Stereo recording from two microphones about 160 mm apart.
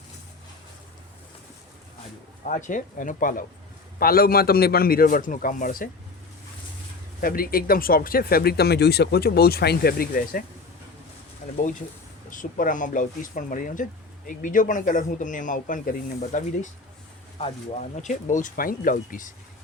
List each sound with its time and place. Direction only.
2.4 s speech: 50° left (ahead or behind)
7.2 s speech: 65° left (ahead or behind)
11.4 s speech: 50° left (ahead or behind)
18.0 s speech: 50° left (ahead or behind)